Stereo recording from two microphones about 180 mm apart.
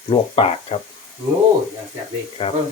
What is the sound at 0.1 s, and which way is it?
Speech, 30° left (ahead or behind).